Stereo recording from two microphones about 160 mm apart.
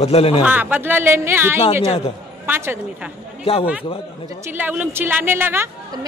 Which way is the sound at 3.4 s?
35° left (ahead or behind).